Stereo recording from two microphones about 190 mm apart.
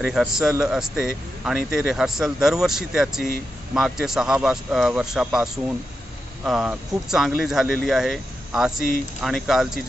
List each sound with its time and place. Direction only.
0.0 s speech: centre (ahead or behind)
6.4 s speech: 5° right (ahead or behind)